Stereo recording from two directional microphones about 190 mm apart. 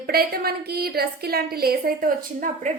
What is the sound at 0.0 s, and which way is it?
A woman's voice, 55° right (ahead or behind).